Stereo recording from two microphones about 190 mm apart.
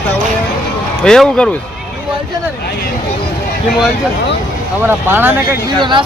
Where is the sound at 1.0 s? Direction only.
5° left (ahead or behind).